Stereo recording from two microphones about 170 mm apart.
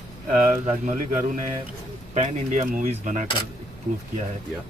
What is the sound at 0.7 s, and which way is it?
Speech, 45° right (ahead or behind).